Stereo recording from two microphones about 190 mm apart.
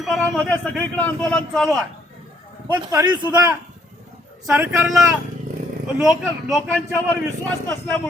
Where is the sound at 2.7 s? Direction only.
20° right (ahead or behind).